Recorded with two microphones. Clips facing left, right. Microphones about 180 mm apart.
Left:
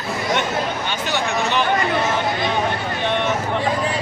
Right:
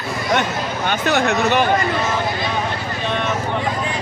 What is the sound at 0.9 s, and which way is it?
Speech, 55° right (ahead or behind).